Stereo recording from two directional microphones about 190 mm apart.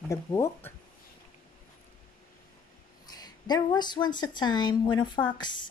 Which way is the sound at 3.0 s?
20° left (ahead or behind).